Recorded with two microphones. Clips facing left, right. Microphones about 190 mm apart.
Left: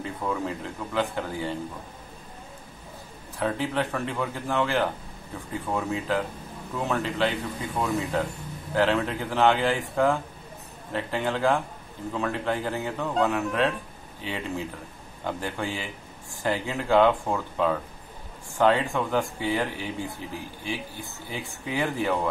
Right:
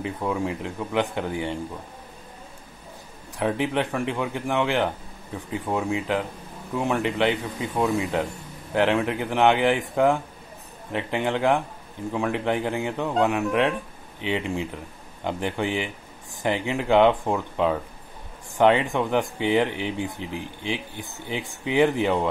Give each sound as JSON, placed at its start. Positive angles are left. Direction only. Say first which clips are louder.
{"t": 0.0, "sound": "speech", "louder": "right 3 dB", "side_deg": -15}
{"t": 3.3, "sound": "speech", "louder": "right 3 dB", "side_deg": -15}